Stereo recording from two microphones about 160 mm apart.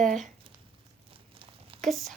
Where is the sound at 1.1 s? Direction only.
35° right (ahead or behind).